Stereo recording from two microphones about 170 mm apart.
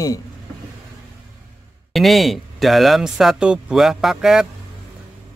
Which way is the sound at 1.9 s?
Centre (ahead or behind).